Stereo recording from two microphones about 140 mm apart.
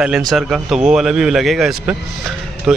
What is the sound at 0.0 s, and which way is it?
Speech, centre (ahead or behind).